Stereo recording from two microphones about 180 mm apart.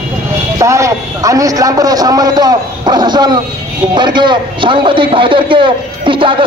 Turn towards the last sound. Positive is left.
turn(degrees=-25)  # may be behind; listen again after turning